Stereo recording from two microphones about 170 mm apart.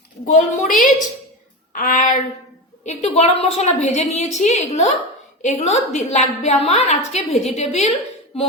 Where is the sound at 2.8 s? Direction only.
40° left (ahead or behind).